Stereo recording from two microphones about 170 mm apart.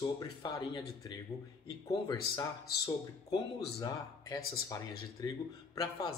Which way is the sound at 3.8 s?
20° left (ahead or behind).